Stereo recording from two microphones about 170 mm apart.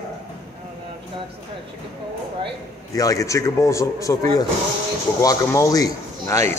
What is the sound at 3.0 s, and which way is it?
A man's voice, 20° left (ahead or behind).